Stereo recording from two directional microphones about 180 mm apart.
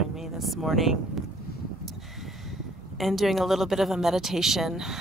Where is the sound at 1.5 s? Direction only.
60° left (ahead or behind).